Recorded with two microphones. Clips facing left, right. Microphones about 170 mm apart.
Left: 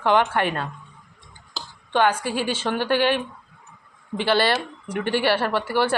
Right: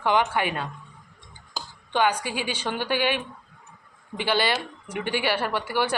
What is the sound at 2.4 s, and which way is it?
Speech, 10° right (ahead or behind).